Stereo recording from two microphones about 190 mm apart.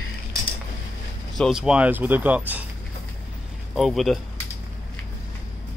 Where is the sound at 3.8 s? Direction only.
Centre (ahead or behind).